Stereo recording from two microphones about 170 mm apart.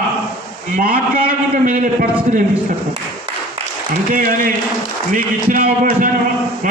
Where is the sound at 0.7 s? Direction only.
55° right (ahead or behind).